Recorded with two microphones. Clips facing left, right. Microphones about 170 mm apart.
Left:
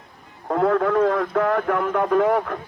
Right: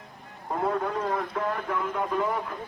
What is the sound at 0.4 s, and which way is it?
A man's voice, 75° left (ahead or behind).